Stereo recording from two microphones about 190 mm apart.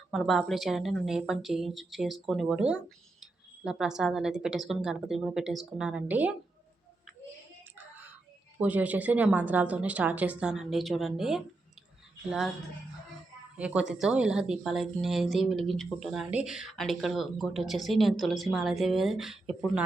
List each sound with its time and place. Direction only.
0.1 s a woman's voice: centre (ahead or behind)
8.5 s a woman's voice: 10° right (ahead or behind)
13.6 s a woman's voice: 5° right (ahead or behind)